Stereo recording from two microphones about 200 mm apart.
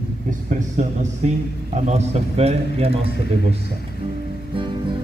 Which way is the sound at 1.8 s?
35° right (ahead or behind).